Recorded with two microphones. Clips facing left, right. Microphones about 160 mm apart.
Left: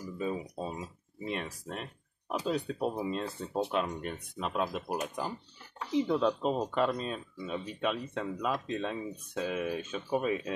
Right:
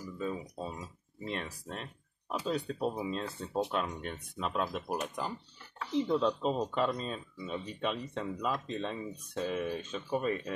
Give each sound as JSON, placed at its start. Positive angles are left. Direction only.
{"t": 0.2, "sound": "speech", "side_deg": 15}
{"t": 0.7, "sound": "speech", "side_deg": 5}